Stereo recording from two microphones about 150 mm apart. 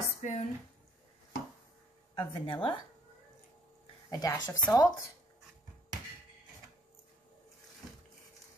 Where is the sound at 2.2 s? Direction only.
30° left (ahead or behind).